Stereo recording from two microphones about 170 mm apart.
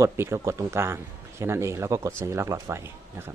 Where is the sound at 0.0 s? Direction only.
15° right (ahead or behind).